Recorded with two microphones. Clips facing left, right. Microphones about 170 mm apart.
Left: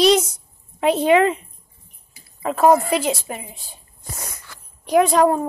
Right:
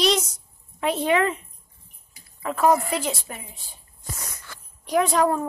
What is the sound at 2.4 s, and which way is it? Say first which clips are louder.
Speech: left 5 dB; 25° left (ahead or behind).